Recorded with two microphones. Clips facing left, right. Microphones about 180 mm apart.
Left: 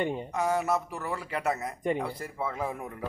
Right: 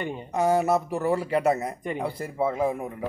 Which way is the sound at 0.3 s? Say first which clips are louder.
Right 9 dB; 30° right (ahead or behind).